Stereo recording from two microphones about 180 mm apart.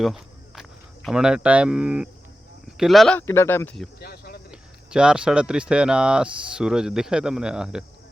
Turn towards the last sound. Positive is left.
turn(degrees=-5)  # may be behind; listen again after turning